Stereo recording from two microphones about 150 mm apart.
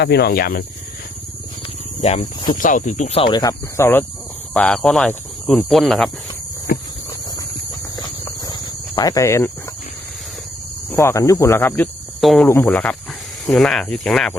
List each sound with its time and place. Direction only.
0.0 s speech: 90° left
2.0 s speech: 45° left (ahead or behind)
2.6 s speech: 60° left (ahead or behind)
3.2 s speech: 30° left (ahead or behind)
3.8 s speech: 15° left (ahead or behind)
6.7 s speech: 90° left
8.4 s cricket: 25° left (ahead or behind)
10.9 s speech: 20° left (ahead or behind)
12.2 s speech: centre (ahead or behind)
12.5 s speech: 15° left (ahead or behind)